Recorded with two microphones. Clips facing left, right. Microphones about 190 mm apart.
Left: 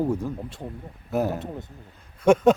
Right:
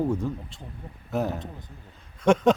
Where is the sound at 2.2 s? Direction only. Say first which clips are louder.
Left 3 dB; 5° left (ahead or behind).